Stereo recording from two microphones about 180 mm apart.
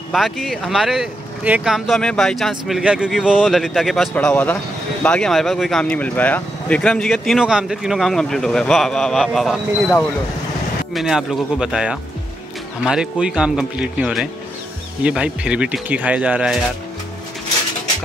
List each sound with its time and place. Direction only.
0.1 s speech: centre (ahead or behind)